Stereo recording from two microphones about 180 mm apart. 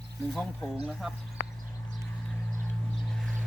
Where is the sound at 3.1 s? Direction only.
5° left (ahead or behind).